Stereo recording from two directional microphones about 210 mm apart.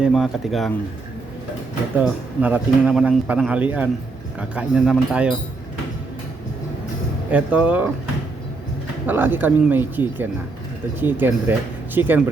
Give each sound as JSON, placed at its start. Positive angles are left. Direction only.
{"t": 0.0, "sound": "speech", "side_deg": 0}
{"t": 2.0, "sound": "speech", "side_deg": -5}
{"t": 7.3, "sound": "speech", "side_deg": -5}
{"t": 9.0, "sound": "speech", "side_deg": -10}